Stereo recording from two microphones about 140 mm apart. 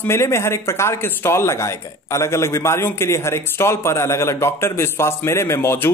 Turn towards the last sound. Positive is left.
turn(degrees=15)  # may be behind; listen again after turning